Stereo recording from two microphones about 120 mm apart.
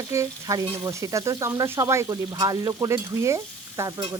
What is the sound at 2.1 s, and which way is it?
Speech, 35° right (ahead or behind).